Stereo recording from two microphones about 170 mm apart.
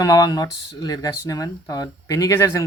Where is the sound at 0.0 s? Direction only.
20° left (ahead or behind).